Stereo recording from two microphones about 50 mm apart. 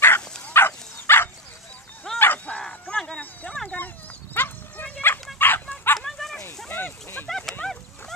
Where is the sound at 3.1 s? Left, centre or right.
Centre.